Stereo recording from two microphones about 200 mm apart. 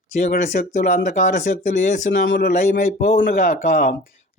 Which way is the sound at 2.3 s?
50° left (ahead or behind).